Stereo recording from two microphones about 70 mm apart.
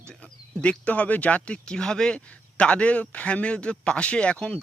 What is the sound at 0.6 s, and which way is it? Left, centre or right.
Speech, centre.